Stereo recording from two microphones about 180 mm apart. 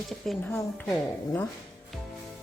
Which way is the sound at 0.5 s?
10° left (ahead or behind).